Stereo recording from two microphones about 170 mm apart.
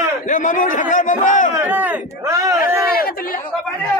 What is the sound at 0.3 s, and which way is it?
A man's voice, 50° left (ahead or behind).